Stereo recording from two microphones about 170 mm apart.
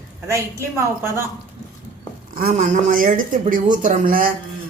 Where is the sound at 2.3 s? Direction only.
50° right (ahead or behind).